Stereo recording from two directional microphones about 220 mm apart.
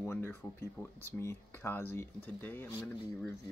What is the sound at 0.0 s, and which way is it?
Speech, 10° left (ahead or behind).